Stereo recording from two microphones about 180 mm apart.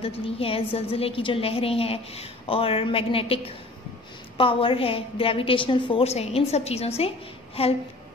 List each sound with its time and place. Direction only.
0.0 s a woman's voice: 30° left (ahead or behind)